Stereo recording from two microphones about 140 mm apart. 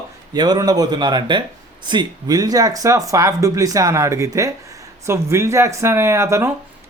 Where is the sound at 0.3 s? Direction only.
30° right (ahead or behind).